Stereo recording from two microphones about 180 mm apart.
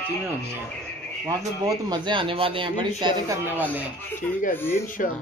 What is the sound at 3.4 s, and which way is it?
Speech, 10° right (ahead or behind).